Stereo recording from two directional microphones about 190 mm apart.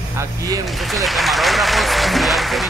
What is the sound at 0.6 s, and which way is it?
Speech, centre (ahead or behind).